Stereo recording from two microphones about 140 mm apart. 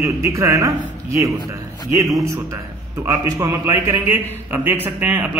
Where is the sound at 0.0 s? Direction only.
20° right (ahead or behind).